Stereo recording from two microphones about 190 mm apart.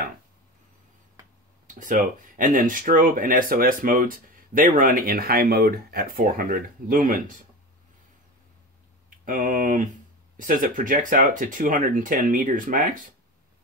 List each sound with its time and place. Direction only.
1.7 s speech: 45° right (ahead or behind)
9.2 s speech: 45° right (ahead or behind)